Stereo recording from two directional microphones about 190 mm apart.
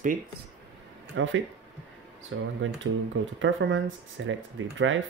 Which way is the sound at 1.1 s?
90° right.